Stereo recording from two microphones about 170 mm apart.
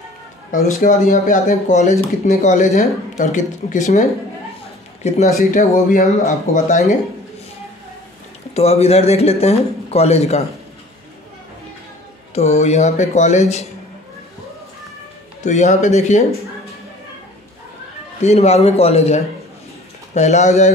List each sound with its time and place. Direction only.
0.5 s speech: 55° left (ahead or behind)
5.0 s speech: 45° left (ahead or behind)
8.5 s speech: 40° left (ahead or behind)
12.4 s speech: 40° left (ahead or behind)
15.4 s speech: 45° left (ahead or behind)
18.2 s speech: 40° left (ahead or behind)